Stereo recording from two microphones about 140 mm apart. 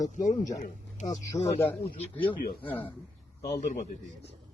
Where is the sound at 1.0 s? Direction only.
25° left (ahead or behind).